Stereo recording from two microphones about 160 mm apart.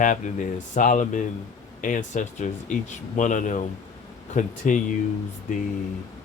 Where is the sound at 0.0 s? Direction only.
55° left (ahead or behind).